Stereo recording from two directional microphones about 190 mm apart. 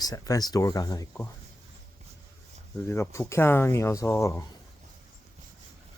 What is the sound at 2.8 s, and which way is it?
Speech, 15° left (ahead or behind).